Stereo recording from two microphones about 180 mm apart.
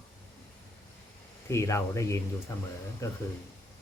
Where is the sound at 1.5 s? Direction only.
15° left (ahead or behind).